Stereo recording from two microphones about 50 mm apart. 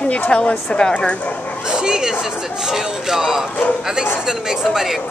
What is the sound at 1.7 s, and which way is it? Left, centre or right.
Chatter, centre.